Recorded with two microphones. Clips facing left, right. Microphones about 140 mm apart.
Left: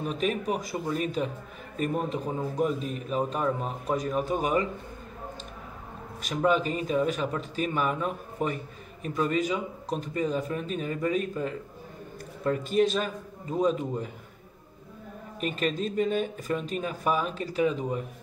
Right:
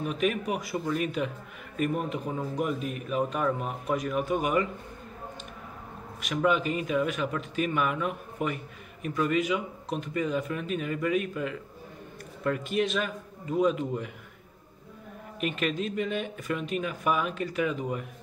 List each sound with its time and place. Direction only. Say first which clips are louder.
0.0 s a man's voice: even; 35° left (ahead or behind)
6.2 s a man's voice: left 1 dB; 35° left (ahead or behind)
15.4 s a man's voice: left 1 dB; 35° left (ahead or behind)